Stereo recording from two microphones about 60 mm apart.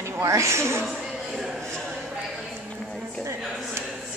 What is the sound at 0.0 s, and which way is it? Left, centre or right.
Speech, right.